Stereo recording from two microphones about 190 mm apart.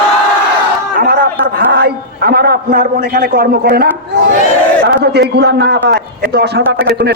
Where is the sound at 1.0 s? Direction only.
50° right (ahead or behind).